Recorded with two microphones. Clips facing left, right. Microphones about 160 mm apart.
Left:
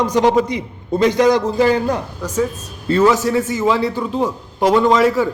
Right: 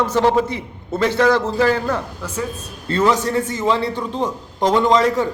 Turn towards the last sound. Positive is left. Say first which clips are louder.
# left 2 dB
turn(degrees=5)  # may be behind; listen again after turning